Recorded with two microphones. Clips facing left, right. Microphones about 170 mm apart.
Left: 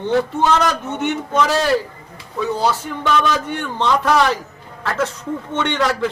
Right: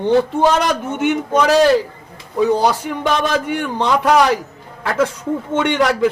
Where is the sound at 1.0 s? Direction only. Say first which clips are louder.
Right 3 dB; 10° right (ahead or behind).